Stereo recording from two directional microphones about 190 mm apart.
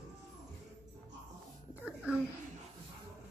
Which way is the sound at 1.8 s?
5° right (ahead or behind).